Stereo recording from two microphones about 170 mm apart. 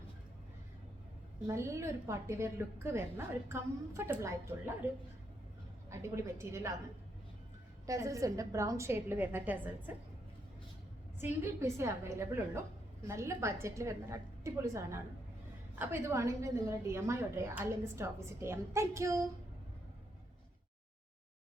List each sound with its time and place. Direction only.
1.5 s a woman's voice: 15° right (ahead or behind)
5.9 s a woman's voice: 15° right (ahead or behind)
7.9 s a woman's voice: 20° right (ahead or behind)
11.2 s a woman's voice: 15° right (ahead or behind)